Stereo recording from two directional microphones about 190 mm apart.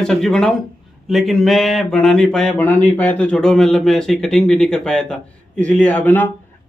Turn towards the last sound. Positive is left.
turn(degrees=10)  # may be behind; listen again after turning